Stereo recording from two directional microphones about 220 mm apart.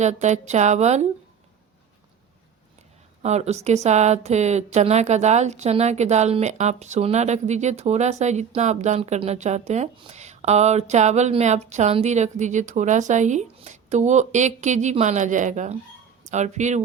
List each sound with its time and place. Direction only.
0.0 s a woman's voice: 30° right (ahead or behind)
3.2 s a woman's voice: 30° right (ahead or behind)